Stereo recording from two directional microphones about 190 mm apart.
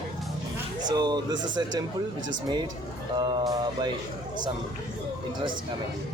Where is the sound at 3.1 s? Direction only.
20° right (ahead or behind).